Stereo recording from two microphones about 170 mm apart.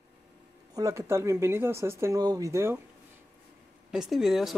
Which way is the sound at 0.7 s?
20° right (ahead or behind).